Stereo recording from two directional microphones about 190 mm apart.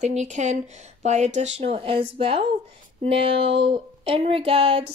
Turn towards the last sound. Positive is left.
turn(degrees=-30)  # may be behind; listen again after turning